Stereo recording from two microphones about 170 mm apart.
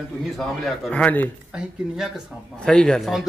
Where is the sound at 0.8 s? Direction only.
10° left (ahead or behind).